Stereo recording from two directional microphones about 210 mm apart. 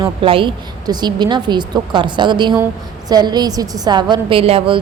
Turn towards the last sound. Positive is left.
turn(degrees=-25)  # may be behind; listen again after turning